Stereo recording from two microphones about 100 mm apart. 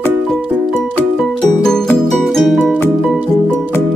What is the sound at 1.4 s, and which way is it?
Music, 5° left (ahead or behind).